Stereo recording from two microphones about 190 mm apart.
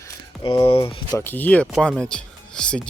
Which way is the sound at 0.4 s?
25° left (ahead or behind).